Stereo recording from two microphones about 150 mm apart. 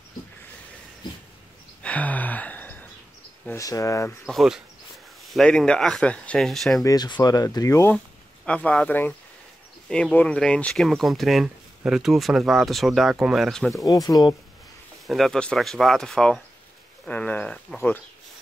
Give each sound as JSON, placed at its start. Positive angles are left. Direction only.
{"t": 1.8, "sound": "a sound", "side_deg": 10}
{"t": 3.4, "sound": "speech", "side_deg": 20}
{"t": 4.3, "sound": "speech", "side_deg": 0}
{"t": 6.8, "sound": "speech", "side_deg": 25}
{"t": 8.5, "sound": "speech", "side_deg": 10}
{"t": 13.8, "sound": "speech", "side_deg": 25}
{"t": 15.0, "sound": "speech", "side_deg": 0}